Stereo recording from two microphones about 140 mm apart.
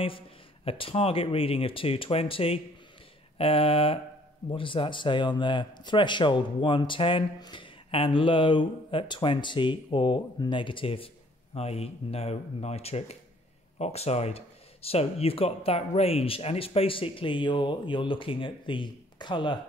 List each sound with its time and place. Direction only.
0.7 s speech: 40° left (ahead or behind)